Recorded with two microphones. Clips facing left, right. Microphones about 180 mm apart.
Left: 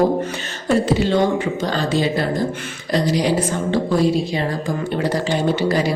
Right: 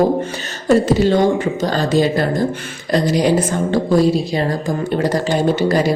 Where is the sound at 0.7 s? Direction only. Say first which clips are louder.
Right 4 dB; 40° right (ahead or behind).